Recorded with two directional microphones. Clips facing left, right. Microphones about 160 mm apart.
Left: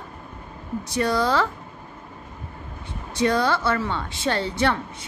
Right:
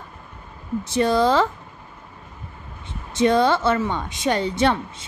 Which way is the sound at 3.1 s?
20° right (ahead or behind).